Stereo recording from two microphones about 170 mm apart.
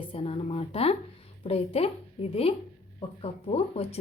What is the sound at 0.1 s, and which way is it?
Speech, 35° left (ahead or behind).